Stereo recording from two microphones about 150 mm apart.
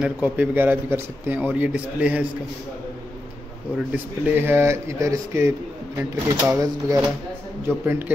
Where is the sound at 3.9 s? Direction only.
15° right (ahead or behind).